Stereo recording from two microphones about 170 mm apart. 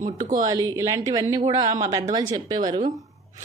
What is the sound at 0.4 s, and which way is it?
Speech, 20° right (ahead or behind).